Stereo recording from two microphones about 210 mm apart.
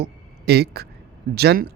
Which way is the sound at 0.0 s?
50° right (ahead or behind).